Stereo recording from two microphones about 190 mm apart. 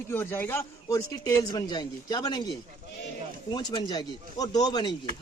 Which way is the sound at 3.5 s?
20° left (ahead or behind).